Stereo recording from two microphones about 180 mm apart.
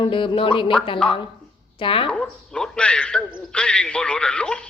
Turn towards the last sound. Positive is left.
turn(degrees=5)  # may be behind; listen again after turning